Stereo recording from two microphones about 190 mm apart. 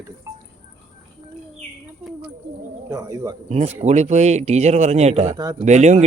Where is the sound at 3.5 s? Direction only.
35° right (ahead or behind).